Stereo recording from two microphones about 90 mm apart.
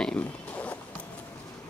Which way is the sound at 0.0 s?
15° left (ahead or behind).